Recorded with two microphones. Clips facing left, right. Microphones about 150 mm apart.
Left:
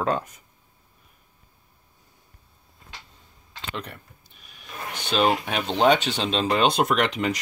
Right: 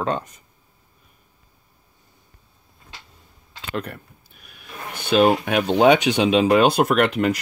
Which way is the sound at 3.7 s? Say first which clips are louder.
Right 9 dB; 5° right (ahead or behind).